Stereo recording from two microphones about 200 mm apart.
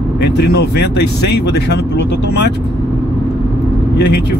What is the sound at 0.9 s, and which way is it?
Speech, 55° left (ahead or behind).